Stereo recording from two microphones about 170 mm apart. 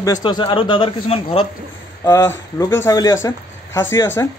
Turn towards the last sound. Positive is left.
turn(degrees=15)  # may be behind; listen again after turning